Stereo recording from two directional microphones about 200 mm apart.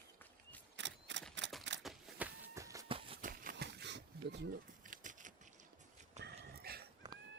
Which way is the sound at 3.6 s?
60° right (ahead or behind).